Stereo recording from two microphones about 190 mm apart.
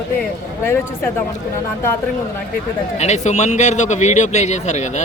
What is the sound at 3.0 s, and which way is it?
A man's voice, 35° left (ahead or behind).